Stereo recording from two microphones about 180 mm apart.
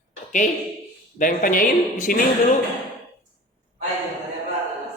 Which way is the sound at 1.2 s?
50° left (ahead or behind).